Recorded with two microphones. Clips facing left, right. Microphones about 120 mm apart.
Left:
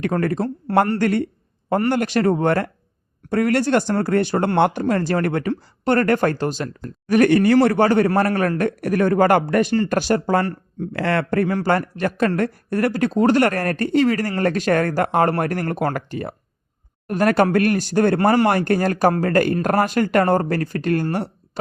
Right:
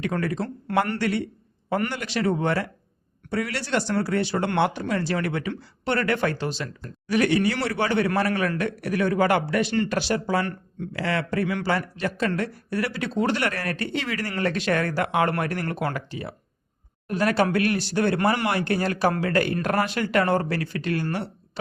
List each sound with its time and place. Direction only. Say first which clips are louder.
0.0 s speech: left 5 dB; 50° left (ahead or behind)
0.4 s speech: left 6 dB; 35° left (ahead or behind)
10.4 s speech: left 5 dB; 35° left (ahead or behind)
10.9 s speech: left 6 dB; 55° left (ahead or behind)